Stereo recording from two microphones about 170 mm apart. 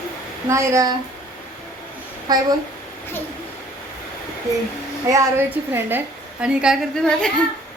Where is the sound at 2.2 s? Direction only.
25° right (ahead or behind).